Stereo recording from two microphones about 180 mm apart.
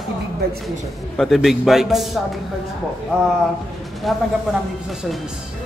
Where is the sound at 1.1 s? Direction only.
Centre (ahead or behind).